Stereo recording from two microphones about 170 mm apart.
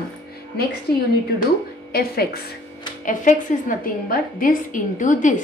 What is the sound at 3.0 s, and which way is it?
A woman's voice, 50° left (ahead or behind).